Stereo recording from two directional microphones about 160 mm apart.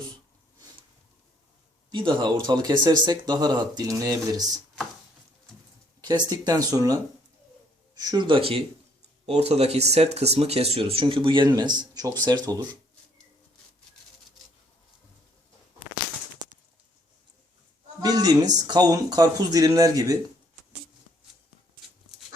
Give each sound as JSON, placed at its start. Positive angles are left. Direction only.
{"t": 1.9, "sound": "speech", "side_deg": -30}
{"t": 6.0, "sound": "speech", "side_deg": -25}
{"t": 18.0, "sound": "a sound", "side_deg": -25}
{"t": 18.7, "sound": "speech", "side_deg": -25}